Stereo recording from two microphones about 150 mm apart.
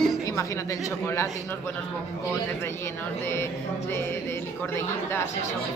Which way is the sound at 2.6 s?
15° left (ahead or behind).